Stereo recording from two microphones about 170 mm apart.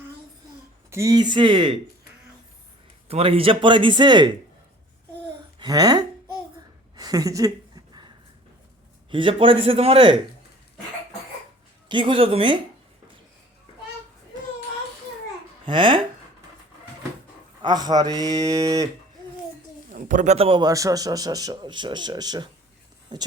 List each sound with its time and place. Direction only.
0.9 s a man's voice: 20° right (ahead or behind)
3.1 s a man's voice: 35° right (ahead or behind)
5.5 s a woman's voice: 20° right (ahead or behind)
9.0 s a man's voice: 30° right (ahead or behind)
11.9 s a man's voice: 30° right (ahead or behind)
15.6 s a man's voice: 30° right (ahead or behind)
17.6 s a man's voice: 25° right (ahead or behind)
19.9 s a man's voice: 50° right (ahead or behind); by 23.3 s 25° right (ahead or behind)